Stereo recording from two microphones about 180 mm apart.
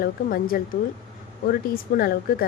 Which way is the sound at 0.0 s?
55° left (ahead or behind).